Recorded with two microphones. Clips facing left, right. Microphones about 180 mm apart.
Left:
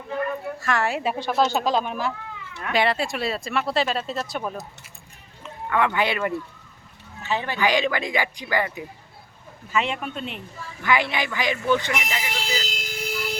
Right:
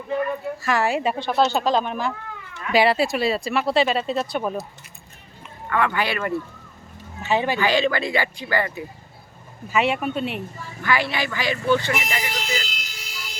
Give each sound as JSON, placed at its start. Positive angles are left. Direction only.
{"t": 0.6, "sound": "speech", "side_deg": 0}
{"t": 2.7, "sound": "speech", "side_deg": -5}
{"t": 5.6, "sound": "speech", "side_deg": 15}
{"t": 7.2, "sound": "speech", "side_deg": -15}
{"t": 7.6, "sound": "speech", "side_deg": 15}
{"t": 9.7, "sound": "speech", "side_deg": -10}
{"t": 10.8, "sound": "speech", "side_deg": 20}
{"t": 11.9, "sound": "speech", "side_deg": 5}
{"t": 12.4, "sound": "vehicle", "side_deg": 30}
{"t": 12.7, "sound": "vehicle", "side_deg": 50}